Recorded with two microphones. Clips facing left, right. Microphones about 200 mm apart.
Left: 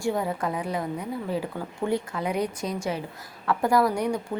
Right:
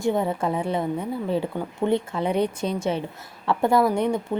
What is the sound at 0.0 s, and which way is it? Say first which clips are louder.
A woman's voice: right 4 dB; 25° right (ahead or behind).